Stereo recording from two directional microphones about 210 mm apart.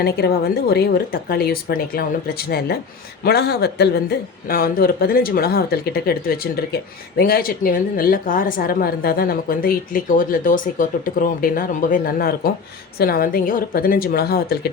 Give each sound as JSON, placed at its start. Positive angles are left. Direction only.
{"t": 0.0, "sound": "a woman's voice", "side_deg": 50}